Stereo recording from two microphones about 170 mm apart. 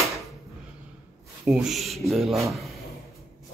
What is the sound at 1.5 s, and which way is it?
Speech, 5° right (ahead or behind).